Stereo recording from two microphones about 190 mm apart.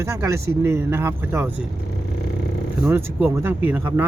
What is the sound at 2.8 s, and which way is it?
Speech, 10° right (ahead or behind).